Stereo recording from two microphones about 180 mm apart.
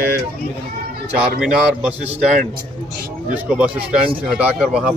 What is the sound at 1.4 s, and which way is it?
Speech, 5° right (ahead or behind).